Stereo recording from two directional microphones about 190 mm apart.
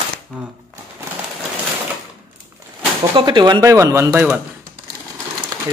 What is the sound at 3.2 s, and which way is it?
Speech, 25° right (ahead or behind).